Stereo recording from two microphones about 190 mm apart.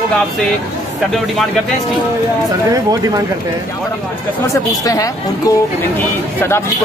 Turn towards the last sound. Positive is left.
turn(degrees=20)  # may be behind; listen again after turning